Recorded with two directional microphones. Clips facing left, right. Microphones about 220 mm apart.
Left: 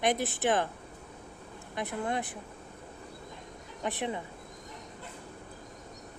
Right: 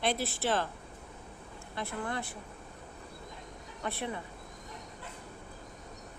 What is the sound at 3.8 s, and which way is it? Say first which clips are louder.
Speech: left 3 dB; 15° left (ahead or behind).